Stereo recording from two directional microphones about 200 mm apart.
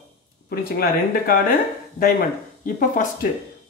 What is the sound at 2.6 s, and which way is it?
Speech, 40° left (ahead or behind).